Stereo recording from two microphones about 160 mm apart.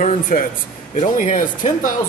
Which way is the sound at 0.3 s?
55° left (ahead or behind).